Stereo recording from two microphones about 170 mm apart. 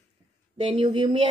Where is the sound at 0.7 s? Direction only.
30° right (ahead or behind).